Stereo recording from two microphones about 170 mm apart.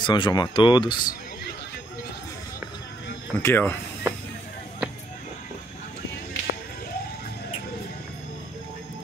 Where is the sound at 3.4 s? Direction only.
15° left (ahead or behind).